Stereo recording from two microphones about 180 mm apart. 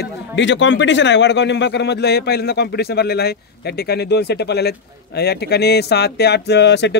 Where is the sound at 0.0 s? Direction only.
85° left.